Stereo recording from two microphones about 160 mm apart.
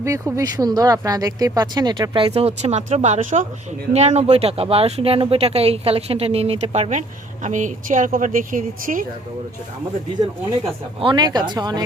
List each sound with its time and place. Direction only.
0.0 s a woman's voice: 20° right (ahead or behind); by 9.0 s 55° right (ahead or behind)
11.0 s speech: 30° right (ahead or behind)